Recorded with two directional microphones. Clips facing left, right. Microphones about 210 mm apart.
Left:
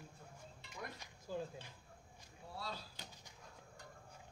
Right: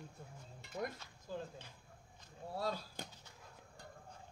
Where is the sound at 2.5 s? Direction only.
50° right (ahead or behind).